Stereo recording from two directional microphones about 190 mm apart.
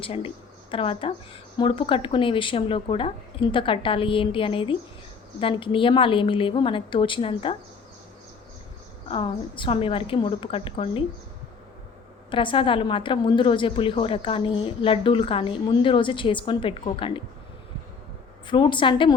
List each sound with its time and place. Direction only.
0.0 s a woman's voice: 30° left (ahead or behind)
9.0 s a woman's voice: 25° left (ahead or behind)
12.3 s a woman's voice: 25° left (ahead or behind)
18.4 s a woman's voice: 25° left (ahead or behind)